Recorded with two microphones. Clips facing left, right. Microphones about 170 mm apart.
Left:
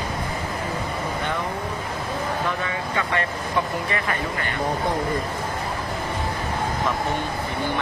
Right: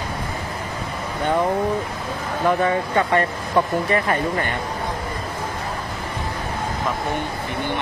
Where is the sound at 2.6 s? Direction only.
40° right (ahead or behind).